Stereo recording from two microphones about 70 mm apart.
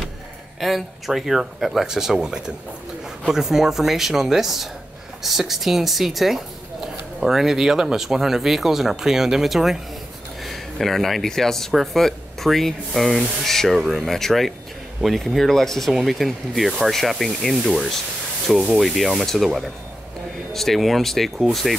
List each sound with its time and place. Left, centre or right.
0.6 s speech: centre
18.8 s speech: centre